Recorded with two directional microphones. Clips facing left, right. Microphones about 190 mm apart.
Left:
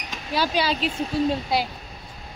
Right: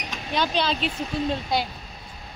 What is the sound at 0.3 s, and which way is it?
Speech, 5° left (ahead or behind).